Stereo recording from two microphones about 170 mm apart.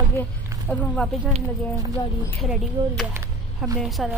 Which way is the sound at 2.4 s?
Centre (ahead or behind).